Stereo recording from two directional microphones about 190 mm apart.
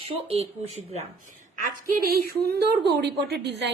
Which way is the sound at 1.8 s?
50° right (ahead or behind).